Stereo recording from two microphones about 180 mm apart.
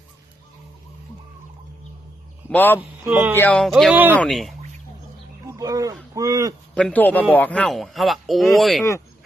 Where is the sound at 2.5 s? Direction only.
10° left (ahead or behind).